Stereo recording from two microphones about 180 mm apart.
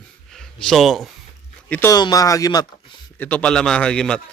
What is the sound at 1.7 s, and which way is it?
Speech, 15° left (ahead or behind).